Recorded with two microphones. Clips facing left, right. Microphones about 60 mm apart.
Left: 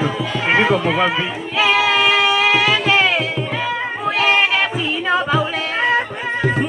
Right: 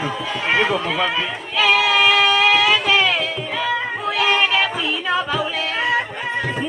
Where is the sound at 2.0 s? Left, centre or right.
Centre.